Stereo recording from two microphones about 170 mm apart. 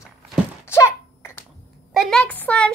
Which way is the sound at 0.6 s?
15° left (ahead or behind).